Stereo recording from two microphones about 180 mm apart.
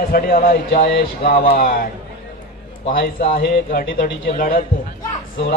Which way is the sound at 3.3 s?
55° left (ahead or behind).